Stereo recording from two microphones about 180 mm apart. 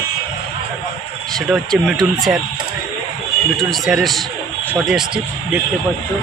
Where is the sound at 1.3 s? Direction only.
Centre (ahead or behind).